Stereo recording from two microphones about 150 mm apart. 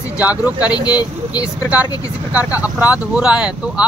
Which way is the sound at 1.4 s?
10° right (ahead or behind).